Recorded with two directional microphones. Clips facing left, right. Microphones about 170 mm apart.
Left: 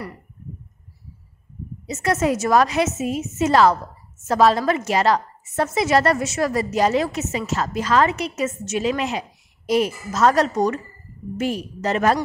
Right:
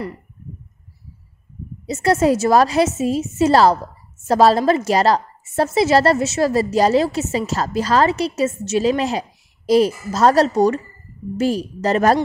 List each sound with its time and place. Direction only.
1.9 s a woman's voice: 35° right (ahead or behind)